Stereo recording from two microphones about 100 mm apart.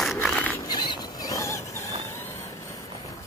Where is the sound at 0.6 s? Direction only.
45° left (ahead or behind); by 1.9 s 30° left (ahead or behind).